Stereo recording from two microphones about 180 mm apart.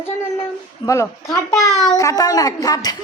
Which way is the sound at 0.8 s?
15° left (ahead or behind).